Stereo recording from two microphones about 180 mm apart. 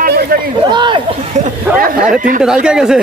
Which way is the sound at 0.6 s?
25° right (ahead or behind).